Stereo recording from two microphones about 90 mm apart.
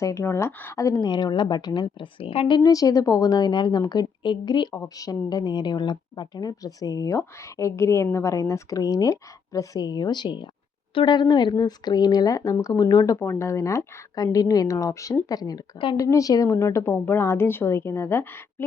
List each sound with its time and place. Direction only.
0.0 s a woman's voice: 35° left (ahead or behind)
1.0 s a woman's voice: 55° left (ahead or behind); by 2.6 s 90° left
2.6 s speech: 40° left (ahead or behind)
4.9 s a woman's voice: 45° left (ahead or behind)
9.8 s a woman's voice: 50° left (ahead or behind)
13.1 s a woman's voice: 30° left (ahead or behind)
14.3 s a woman's voice: 45° left (ahead or behind); by 18.4 s 25° left (ahead or behind)